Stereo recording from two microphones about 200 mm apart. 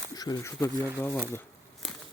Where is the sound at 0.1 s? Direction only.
20° left (ahead or behind).